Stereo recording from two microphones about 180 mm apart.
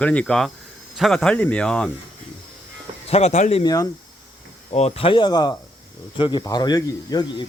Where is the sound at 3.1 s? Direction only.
35° left (ahead or behind).